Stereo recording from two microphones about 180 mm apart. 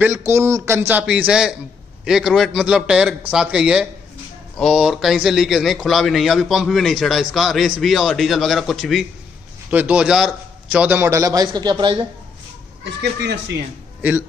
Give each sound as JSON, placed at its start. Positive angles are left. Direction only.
{"t": 0.0, "sound": "a man's voice", "side_deg": -15}
{"t": 13.0, "sound": "speech", "side_deg": -70}